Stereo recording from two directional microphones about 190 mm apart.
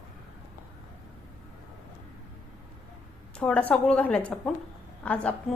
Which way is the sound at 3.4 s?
5° left (ahead or behind).